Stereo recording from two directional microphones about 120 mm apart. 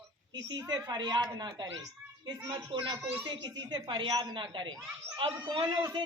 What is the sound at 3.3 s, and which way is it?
A woman's voice, 35° right (ahead or behind).